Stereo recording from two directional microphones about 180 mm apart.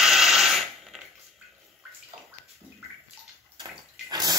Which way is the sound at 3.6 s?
20° right (ahead or behind).